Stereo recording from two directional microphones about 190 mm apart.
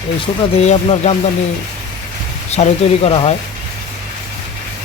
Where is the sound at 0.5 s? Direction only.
35° left (ahead or behind).